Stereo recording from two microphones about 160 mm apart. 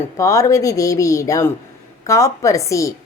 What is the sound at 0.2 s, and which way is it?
Speech, 20° left (ahead or behind).